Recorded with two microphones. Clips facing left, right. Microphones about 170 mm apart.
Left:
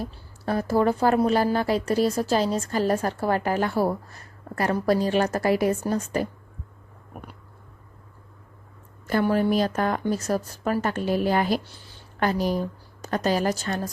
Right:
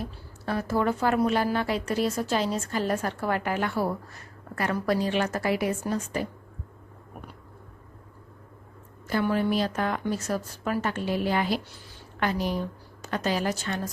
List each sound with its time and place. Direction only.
0.0 s a woman's voice: 40° left (ahead or behind)
9.2 s a woman's voice: 40° left (ahead or behind)